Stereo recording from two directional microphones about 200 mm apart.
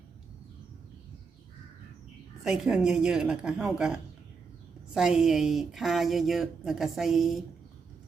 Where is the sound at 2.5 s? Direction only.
5° right (ahead or behind).